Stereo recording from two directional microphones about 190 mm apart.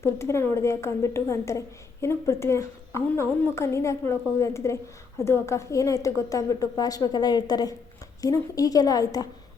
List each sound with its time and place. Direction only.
0.0 s a woman's voice: 15° left (ahead or behind)